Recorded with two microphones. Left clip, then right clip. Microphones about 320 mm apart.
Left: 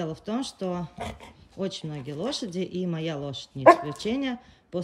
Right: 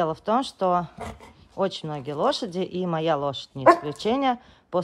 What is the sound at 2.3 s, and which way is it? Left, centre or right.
Speech, centre.